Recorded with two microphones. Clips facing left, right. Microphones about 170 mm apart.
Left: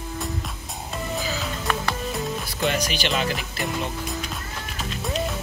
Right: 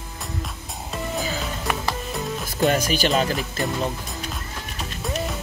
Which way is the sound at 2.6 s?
45° right (ahead or behind).